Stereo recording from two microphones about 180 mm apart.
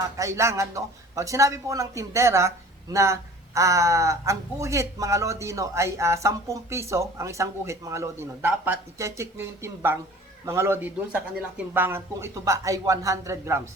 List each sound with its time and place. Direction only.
0.2 s speech: 15° right (ahead or behind)